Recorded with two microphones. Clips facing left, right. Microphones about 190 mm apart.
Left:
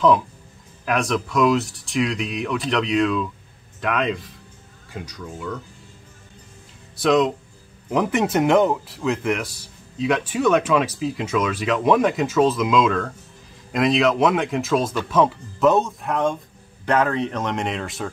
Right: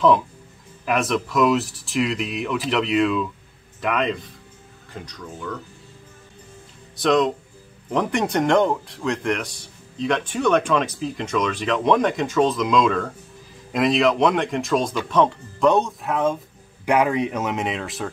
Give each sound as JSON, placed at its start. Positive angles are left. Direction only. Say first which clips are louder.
{"t": 0.8, "sound": "a man's voice", "louder": "even", "side_deg": 0}
{"t": 7.0, "sound": "a man's voice", "louder": "left 1 dB", "side_deg": 0}
{"t": 16.8, "sound": "speech", "louder": "right 1 dB", "side_deg": -10}